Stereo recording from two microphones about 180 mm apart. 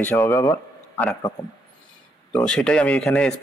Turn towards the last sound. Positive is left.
turn(degrees=5)  # may be behind; listen again after turning